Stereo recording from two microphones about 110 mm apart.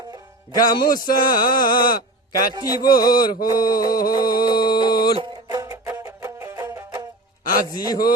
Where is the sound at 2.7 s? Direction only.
35° left (ahead or behind).